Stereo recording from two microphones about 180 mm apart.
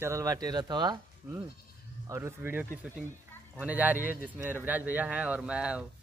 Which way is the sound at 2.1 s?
15° right (ahead or behind).